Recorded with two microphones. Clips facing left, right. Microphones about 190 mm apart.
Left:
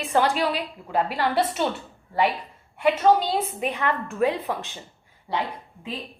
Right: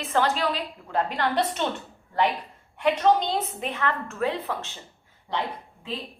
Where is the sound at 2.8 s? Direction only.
5° left (ahead or behind).